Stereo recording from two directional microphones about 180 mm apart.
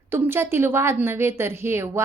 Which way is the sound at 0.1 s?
15° right (ahead or behind).